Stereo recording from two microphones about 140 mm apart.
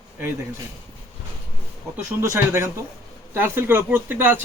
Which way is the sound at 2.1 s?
20° right (ahead or behind).